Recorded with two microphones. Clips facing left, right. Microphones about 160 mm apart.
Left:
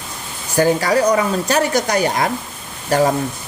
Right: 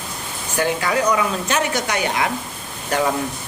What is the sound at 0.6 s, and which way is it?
A man's voice, 40° left (ahead or behind).